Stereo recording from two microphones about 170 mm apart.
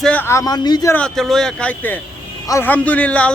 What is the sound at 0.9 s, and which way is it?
A man's voice, 5° left (ahead or behind).